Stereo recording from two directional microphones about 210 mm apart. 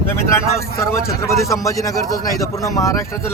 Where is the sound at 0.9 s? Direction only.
15° left (ahead or behind).